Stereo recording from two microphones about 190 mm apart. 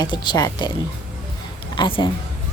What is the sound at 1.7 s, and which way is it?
Speech, 25° left (ahead or behind).